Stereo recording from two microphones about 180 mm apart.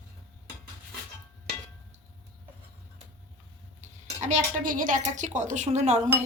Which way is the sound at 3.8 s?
45° right (ahead or behind).